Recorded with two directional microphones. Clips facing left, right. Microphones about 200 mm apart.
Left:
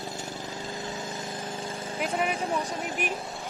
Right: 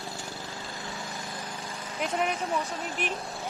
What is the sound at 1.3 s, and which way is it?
Lawn mower, 50° left (ahead or behind).